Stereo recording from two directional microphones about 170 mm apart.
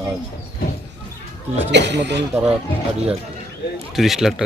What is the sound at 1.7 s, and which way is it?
Speech, 90° right.